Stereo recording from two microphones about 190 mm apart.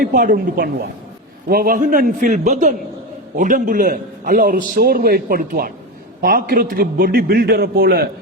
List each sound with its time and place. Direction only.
0.0 s a man's voice: 45° right (ahead or behind)